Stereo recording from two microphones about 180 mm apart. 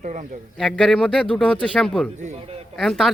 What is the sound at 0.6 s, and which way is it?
A man's voice, centre (ahead or behind).